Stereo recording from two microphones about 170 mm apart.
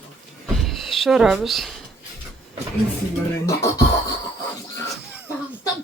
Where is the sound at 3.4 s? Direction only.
20° left (ahead or behind).